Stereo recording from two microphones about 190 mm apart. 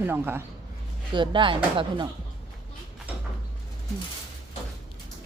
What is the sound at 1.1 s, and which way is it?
Speech, 25° right (ahead or behind).